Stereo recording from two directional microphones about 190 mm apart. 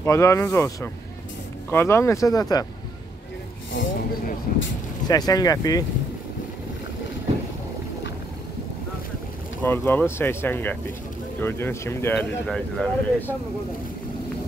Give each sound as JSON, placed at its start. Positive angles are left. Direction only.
{"t": 0.0, "sound": "speech", "side_deg": 15}
{"t": 4.5, "sound": "vehicle", "side_deg": 45}
{"t": 5.0, "sound": "speech", "side_deg": 20}
{"t": 9.6, "sound": "speech", "side_deg": 10}